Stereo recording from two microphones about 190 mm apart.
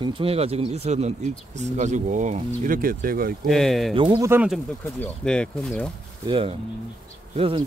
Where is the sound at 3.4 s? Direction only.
Centre (ahead or behind).